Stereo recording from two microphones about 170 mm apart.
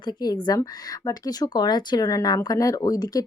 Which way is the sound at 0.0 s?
25° left (ahead or behind).